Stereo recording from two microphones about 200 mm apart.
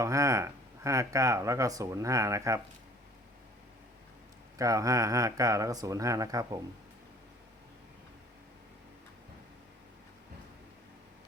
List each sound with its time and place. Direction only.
0.0 s speech: 15° right (ahead or behind)
4.5 s speech: 15° right (ahead or behind)